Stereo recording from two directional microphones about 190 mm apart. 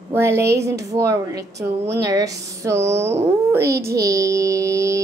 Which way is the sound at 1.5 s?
60° right (ahead or behind).